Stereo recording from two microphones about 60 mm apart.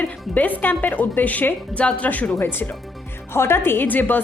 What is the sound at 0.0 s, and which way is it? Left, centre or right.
A woman's voice, left.